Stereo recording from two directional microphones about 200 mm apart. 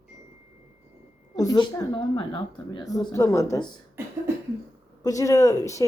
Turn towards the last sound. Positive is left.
turn(degrees=15)  # may be behind; listen again after turning